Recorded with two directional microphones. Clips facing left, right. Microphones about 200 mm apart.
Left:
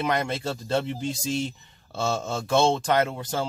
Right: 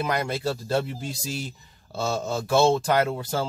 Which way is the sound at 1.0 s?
5° right (ahead or behind).